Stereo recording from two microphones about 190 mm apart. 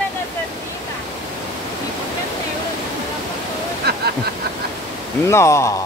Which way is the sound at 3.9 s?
55° right (ahead or behind).